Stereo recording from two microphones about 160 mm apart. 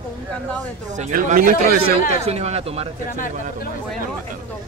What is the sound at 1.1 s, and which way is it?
Speech, 55° right (ahead or behind).